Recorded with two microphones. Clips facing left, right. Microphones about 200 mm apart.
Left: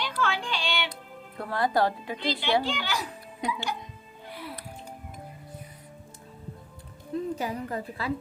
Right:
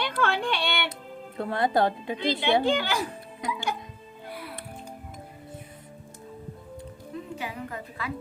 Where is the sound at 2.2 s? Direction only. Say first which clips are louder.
Right 3 dB; 55° right (ahead or behind).